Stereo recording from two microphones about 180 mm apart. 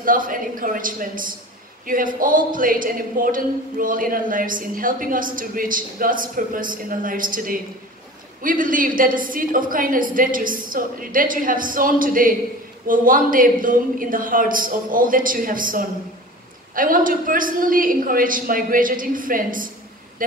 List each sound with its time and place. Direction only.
0.0 s speech: 50° right (ahead or behind)